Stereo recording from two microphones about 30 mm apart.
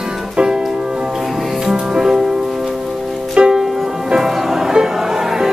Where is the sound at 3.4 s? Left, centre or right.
Right.